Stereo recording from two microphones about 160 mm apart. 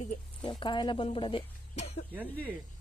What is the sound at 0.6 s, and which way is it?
A woman's voice, 30° left (ahead or behind).